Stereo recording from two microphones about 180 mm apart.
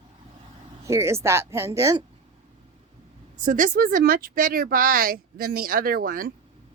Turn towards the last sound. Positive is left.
turn(degrees=-55)  # may be behind; listen again after turning